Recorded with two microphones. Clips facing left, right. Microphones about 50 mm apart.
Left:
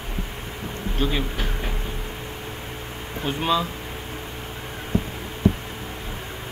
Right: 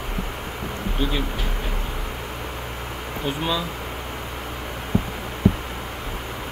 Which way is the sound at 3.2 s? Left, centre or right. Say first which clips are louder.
Left 3 dB; centre.